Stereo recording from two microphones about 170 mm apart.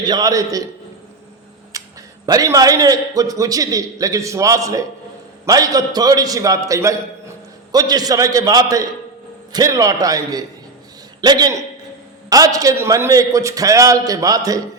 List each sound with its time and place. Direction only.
0.0 s a man's voice: 25° right (ahead or behind)
1.7 s a sound: 20° right (ahead or behind)
2.2 s a man's voice: 20° right (ahead or behind)